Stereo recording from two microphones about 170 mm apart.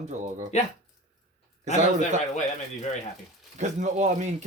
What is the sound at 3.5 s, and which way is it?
Speech, 45° right (ahead or behind).